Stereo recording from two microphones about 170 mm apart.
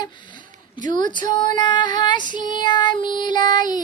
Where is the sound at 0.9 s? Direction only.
25° left (ahead or behind).